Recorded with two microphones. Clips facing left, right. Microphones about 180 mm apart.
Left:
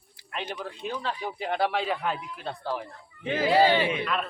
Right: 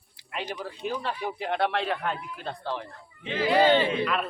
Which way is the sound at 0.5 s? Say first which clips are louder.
Right 3 dB; 5° right (ahead or behind).